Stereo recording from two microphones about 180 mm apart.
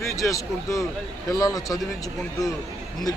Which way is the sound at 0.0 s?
15° left (ahead or behind).